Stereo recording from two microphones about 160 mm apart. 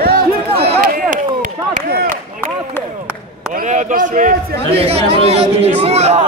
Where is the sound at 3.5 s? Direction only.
50° right (ahead or behind).